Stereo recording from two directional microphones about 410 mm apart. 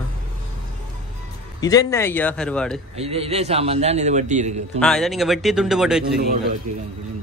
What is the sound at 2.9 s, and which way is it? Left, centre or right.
A man's voice, centre.